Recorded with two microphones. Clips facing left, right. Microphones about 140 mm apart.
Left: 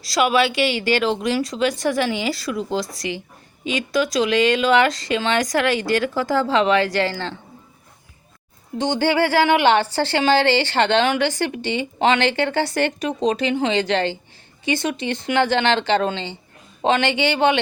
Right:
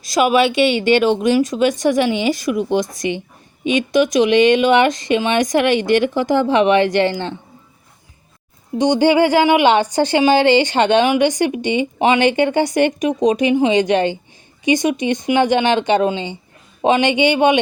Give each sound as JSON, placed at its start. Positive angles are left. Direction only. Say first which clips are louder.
{"t": 0.0, "sound": "speech", "louder": "right 4 dB", "side_deg": -20}
{"t": 8.8, "sound": "a woman's voice", "louder": "right 6 dB", "side_deg": -15}